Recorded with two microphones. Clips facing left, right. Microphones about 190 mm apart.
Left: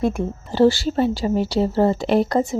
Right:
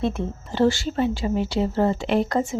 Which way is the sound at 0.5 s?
35° left (ahead or behind).